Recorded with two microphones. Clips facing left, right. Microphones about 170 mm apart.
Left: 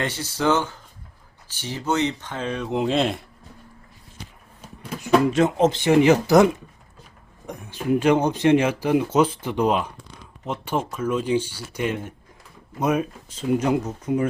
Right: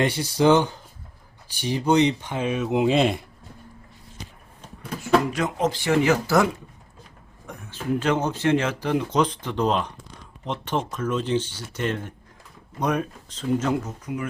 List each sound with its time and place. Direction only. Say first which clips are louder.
0.0 s speech: right 4 dB; 15° right (ahead or behind)
4.6 s speech: even; 20° left (ahead or behind)
14.0 s speech: left 8 dB; 30° left (ahead or behind)